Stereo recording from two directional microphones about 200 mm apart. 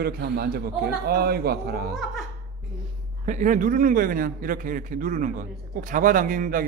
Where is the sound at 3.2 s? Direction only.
40° right (ahead or behind).